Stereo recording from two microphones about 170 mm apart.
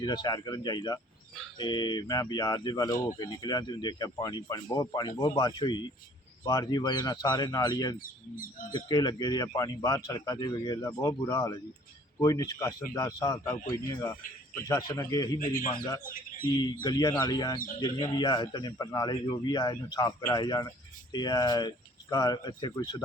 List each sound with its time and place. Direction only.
0.0 s speech: 25° left (ahead or behind)
15.4 s speech: 50° left (ahead or behind)
15.7 s speech: 20° left (ahead or behind)